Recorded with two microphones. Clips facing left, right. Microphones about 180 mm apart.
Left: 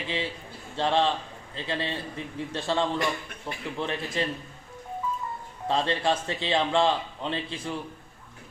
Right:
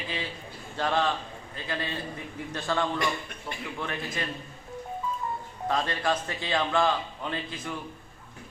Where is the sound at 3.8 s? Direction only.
25° left (ahead or behind).